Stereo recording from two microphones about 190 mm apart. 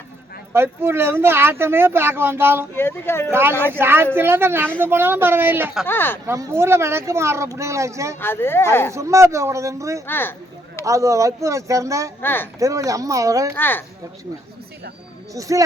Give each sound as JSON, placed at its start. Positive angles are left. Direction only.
{"t": 0.5, "sound": "speech", "side_deg": -10}
{"t": 2.7, "sound": "speech", "side_deg": 10}
{"t": 3.3, "sound": "speech", "side_deg": -10}
{"t": 5.8, "sound": "speech", "side_deg": 10}
{"t": 6.2, "sound": "speech", "side_deg": -15}
{"t": 8.2, "sound": "speech", "side_deg": 10}
{"t": 8.9, "sound": "speech", "side_deg": -15}
{"t": 10.1, "sound": "speech", "side_deg": 10}
{"t": 10.8, "sound": "speech", "side_deg": -15}
{"t": 12.2, "sound": "speech", "side_deg": 10}
{"t": 12.5, "sound": "speech", "side_deg": -15}
{"t": 13.6, "sound": "speech", "side_deg": 10}
{"t": 15.3, "sound": "speech", "side_deg": -15}